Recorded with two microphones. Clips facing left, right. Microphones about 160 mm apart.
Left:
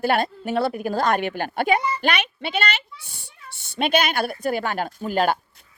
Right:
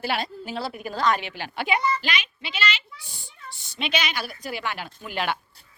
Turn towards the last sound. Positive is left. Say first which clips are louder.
# even
turn(degrees=-35)  # may be behind; listen again after turning